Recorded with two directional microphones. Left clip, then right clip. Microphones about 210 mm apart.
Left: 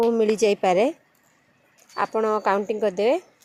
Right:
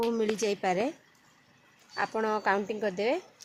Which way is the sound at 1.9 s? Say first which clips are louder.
Left 7 dB; 30° left (ahead or behind).